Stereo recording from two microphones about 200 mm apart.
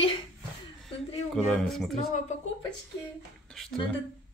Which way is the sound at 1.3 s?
Centre (ahead or behind).